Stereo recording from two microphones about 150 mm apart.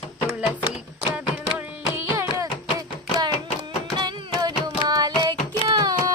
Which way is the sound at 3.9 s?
25° right (ahead or behind).